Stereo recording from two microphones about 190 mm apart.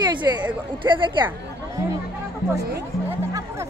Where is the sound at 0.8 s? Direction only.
25° right (ahead or behind).